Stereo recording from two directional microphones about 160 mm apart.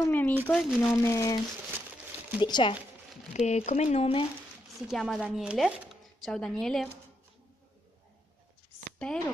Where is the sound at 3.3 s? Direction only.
45° left (ahead or behind).